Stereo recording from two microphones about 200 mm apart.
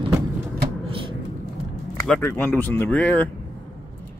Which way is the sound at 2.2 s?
10° left (ahead or behind).